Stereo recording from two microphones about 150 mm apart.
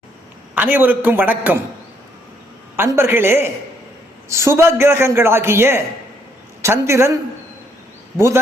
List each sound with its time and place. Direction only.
0.5 s a man's voice: 10° right (ahead or behind)
2.7 s a man's voice: 15° right (ahead or behind)